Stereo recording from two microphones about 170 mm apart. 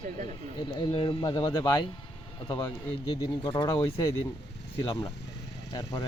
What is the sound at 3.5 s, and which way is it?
Speech, 15° left (ahead or behind).